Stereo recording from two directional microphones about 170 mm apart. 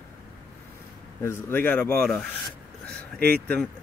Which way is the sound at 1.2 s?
15° left (ahead or behind).